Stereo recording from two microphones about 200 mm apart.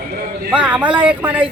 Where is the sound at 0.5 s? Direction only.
5° right (ahead or behind).